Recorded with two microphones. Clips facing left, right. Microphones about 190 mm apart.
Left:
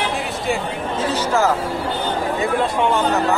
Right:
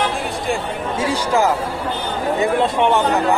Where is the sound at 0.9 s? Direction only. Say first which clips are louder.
Right 1 dB; 10° right (ahead or behind).